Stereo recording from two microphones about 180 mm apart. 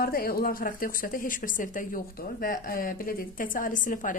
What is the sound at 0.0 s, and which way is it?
A woman's voice, 55° left (ahead or behind).